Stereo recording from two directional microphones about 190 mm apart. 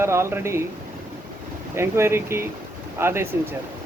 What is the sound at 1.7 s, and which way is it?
Speech, 15° right (ahead or behind).